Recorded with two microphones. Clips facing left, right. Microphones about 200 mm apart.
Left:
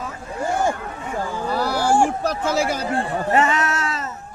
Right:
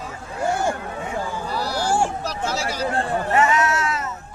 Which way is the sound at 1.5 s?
50° left (ahead or behind).